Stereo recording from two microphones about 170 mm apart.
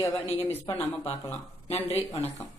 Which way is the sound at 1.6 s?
35° left (ahead or behind).